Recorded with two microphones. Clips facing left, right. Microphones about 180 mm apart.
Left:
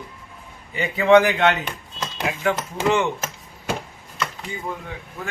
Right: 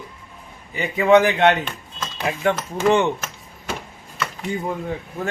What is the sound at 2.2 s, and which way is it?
Speech, 35° right (ahead or behind).